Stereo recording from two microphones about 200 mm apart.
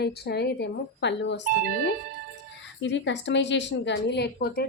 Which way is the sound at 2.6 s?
65° left (ahead or behind).